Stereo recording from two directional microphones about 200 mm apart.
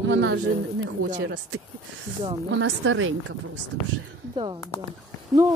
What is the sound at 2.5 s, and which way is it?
Speech, 70° right (ahead or behind).